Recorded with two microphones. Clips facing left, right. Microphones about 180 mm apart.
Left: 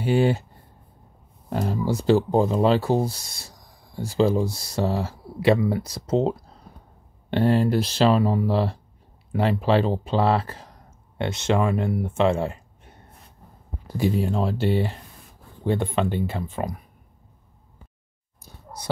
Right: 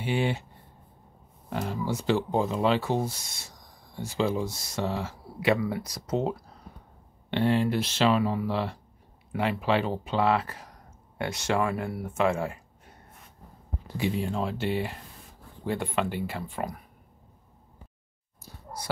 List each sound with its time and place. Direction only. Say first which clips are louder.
0.0 s speech: left 7 dB; 40° left (ahead or behind)
1.5 s speech: left 5 dB; 35° left (ahead or behind)
7.2 s speech: left 4 dB; 40° left (ahead or behind)
13.9 s speech: left 5 dB; 40° left (ahead or behind); by 16.7 s 20° left (ahead or behind)
18.4 s a sound: right 1 dB; 20° left (ahead or behind)